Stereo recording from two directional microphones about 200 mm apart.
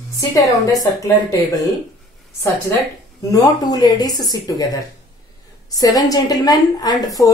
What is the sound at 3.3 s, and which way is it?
A woman's voice, 20° left (ahead or behind).